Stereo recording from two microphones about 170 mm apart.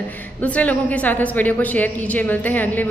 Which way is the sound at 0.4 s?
10° left (ahead or behind).